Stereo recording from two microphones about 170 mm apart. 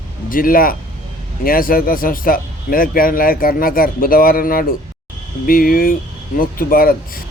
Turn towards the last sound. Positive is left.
turn(degrees=60)  # may be behind; listen again after turning